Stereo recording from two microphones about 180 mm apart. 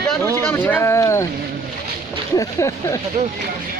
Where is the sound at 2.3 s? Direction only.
15° left (ahead or behind).